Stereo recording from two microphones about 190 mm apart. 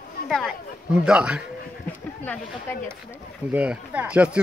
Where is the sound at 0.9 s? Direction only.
5° right (ahead or behind).